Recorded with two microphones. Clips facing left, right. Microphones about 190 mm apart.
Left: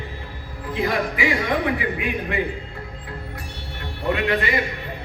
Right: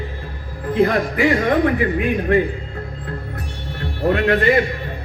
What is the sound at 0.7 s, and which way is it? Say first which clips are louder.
A man's voice: right 6 dB; 50° right (ahead or behind).